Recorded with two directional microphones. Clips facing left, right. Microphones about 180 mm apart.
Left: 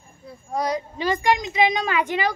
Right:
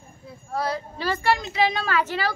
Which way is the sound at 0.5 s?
15° left (ahead or behind).